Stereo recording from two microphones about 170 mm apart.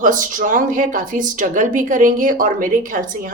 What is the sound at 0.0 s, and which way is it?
Speech, 50° right (ahead or behind).